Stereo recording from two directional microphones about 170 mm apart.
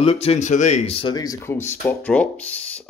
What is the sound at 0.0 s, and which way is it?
Speech, 35° left (ahead or behind).